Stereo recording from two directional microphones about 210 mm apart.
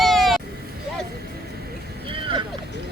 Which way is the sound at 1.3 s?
50° right (ahead or behind).